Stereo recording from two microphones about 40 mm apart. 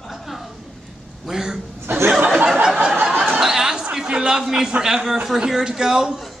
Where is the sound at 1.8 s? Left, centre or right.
Right.